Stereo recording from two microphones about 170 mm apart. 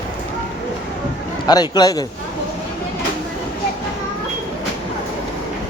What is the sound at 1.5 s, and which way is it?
Speech, 25° left (ahead or behind).